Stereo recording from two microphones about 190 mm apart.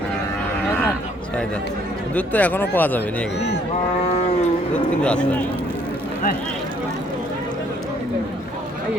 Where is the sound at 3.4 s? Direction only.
65° left (ahead or behind).